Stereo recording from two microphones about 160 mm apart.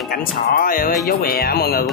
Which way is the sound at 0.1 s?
65° left (ahead or behind).